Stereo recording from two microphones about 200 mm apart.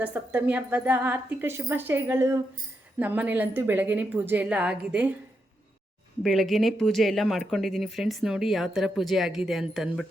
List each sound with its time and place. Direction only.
0.0 s speech: 10° right (ahead or behind)
6.2 s speech: centre (ahead or behind)